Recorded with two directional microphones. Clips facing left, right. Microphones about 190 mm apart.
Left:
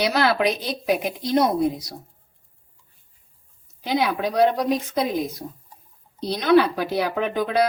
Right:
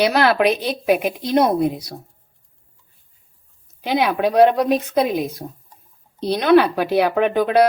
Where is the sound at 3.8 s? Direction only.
65° right (ahead or behind).